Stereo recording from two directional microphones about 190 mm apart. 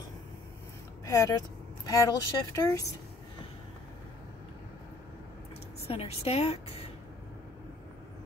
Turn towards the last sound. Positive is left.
turn(degrees=30)  # may be behind; listen again after turning